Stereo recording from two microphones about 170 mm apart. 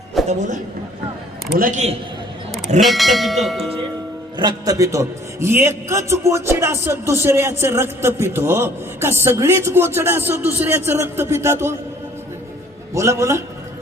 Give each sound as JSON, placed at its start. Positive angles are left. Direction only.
{"t": 0.3, "sound": "a man's voice", "side_deg": -45}
{"t": 2.8, "sound": "speech", "side_deg": 0}
{"t": 4.4, "sound": "a man's voice", "side_deg": -25}
{"t": 12.9, "sound": "a man's voice", "side_deg": -15}